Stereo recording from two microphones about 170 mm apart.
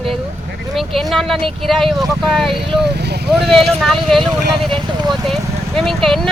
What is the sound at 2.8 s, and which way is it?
Speech, 75° right (ahead or behind).